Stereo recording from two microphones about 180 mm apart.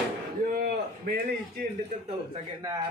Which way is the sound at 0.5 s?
60° right (ahead or behind).